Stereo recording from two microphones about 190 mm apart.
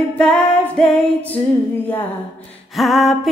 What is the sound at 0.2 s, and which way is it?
Singing, centre (ahead or behind).